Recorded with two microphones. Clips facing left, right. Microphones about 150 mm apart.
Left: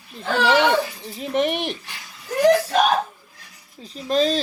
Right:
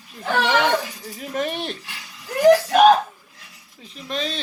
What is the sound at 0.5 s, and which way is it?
Speech, 25° left (ahead or behind).